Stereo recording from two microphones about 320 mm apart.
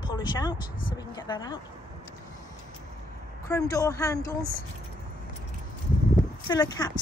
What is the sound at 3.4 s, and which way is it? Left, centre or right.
Speech, centre.